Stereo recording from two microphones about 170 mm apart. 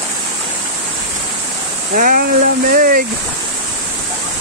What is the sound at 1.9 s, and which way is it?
Speech, 55° right (ahead or behind).